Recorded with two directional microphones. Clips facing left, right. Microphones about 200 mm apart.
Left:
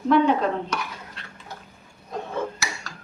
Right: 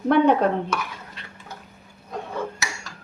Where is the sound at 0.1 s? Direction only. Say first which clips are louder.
Even; 60° right (ahead or behind).